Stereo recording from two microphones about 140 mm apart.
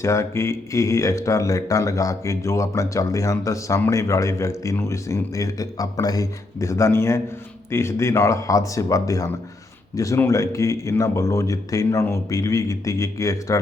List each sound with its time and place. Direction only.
0.0 s speech: 20° left (ahead or behind)